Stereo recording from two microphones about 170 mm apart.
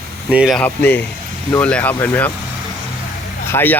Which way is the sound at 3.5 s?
10° left (ahead or behind).